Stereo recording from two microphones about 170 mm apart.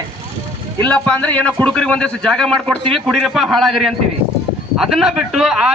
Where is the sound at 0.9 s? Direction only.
10° left (ahead or behind).